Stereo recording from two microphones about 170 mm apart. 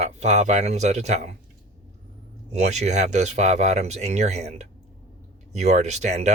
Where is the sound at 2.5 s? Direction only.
40° right (ahead or behind).